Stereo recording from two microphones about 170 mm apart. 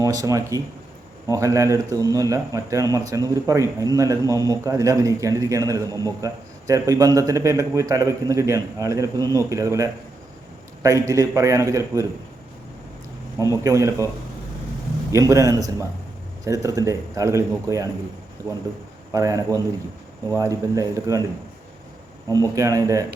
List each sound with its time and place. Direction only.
0.0 s a man's voice: 20° right (ahead or behind)
13.7 s speech: 20° right (ahead or behind)
15.1 s a man's voice: 20° right (ahead or behind)
19.1 s a man's voice: 20° right (ahead or behind)
22.3 s a man's voice: 20° right (ahead or behind)